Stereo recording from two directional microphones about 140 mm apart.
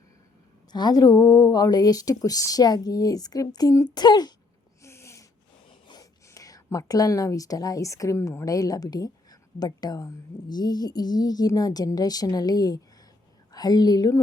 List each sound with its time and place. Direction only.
0.7 s speech: 30° left (ahead or behind)
4.8 s a sound: 20° left (ahead or behind)
5.9 s a woman's voice: 25° left (ahead or behind)